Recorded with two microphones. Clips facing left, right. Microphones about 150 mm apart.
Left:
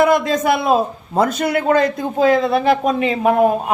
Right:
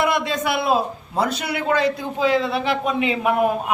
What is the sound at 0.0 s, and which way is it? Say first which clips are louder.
A man's voice: left 6 dB; 45° left (ahead or behind).